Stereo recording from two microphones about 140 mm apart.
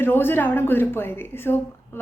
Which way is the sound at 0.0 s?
15° left (ahead or behind).